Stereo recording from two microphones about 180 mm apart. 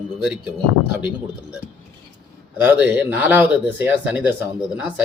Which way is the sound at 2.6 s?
10° right (ahead or behind).